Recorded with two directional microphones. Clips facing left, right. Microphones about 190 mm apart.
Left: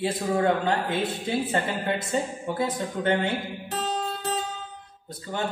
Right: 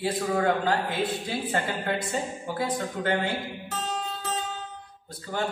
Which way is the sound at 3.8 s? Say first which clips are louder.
Left 4 dB; 35° left (ahead or behind).